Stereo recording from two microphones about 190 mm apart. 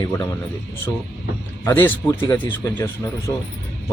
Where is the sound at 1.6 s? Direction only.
10° left (ahead or behind).